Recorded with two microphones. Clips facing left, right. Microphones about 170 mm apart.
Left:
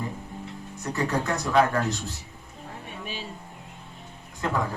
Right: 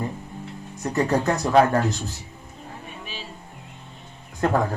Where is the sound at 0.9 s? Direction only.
45° right (ahead or behind).